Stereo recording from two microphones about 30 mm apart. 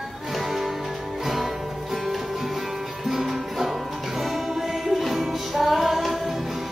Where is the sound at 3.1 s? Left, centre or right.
Centre.